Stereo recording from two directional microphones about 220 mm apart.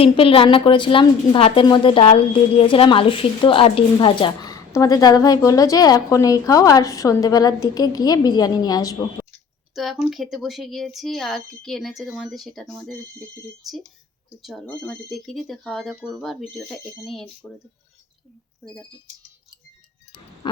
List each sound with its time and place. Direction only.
0.0 s a woman's voice: 25° left (ahead or behind)
9.7 s a woman's voice: centre (ahead or behind)
18.6 s speech: 5° left (ahead or behind)
20.4 s frog: 20° left (ahead or behind)